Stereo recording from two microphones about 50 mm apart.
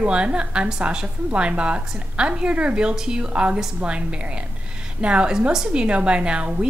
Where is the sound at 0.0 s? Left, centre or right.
Right.